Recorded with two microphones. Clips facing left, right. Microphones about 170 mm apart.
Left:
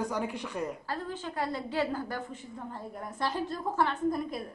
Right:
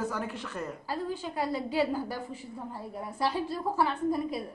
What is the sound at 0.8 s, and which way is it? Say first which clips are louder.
A woman's voice: right 2 dB; 10° right (ahead or behind).